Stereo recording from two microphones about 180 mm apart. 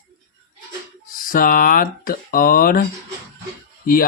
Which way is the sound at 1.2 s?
50° left (ahead or behind).